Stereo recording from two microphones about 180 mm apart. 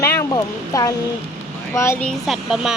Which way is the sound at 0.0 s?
15° left (ahead or behind).